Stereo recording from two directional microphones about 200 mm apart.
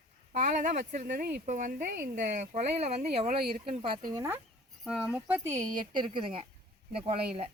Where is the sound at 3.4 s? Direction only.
50° right (ahead or behind).